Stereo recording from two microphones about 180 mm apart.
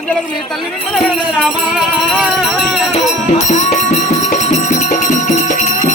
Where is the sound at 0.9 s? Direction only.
Centre (ahead or behind).